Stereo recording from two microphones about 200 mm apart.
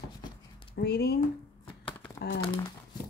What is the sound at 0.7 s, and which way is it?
Speech, 55° left (ahead or behind).